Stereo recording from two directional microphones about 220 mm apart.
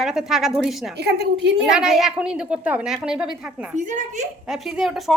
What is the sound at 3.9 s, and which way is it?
Speech, 35° right (ahead or behind).